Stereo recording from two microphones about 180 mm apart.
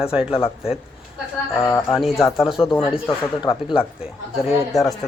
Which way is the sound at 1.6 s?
15° left (ahead or behind).